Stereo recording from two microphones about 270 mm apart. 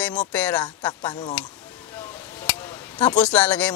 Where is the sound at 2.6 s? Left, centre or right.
Centre.